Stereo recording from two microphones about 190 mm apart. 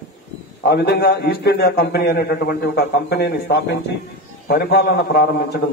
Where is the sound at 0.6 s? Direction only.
60° left (ahead or behind).